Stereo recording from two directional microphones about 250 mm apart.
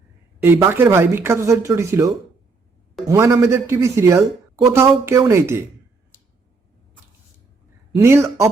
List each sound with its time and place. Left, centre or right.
0.4 s speech: centre
7.9 s speech: centre